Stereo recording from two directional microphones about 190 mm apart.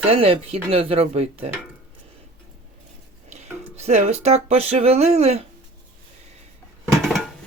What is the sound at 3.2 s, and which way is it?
Speech, 35° right (ahead or behind).